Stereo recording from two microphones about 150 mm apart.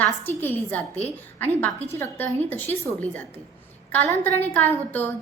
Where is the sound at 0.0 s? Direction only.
15° left (ahead or behind).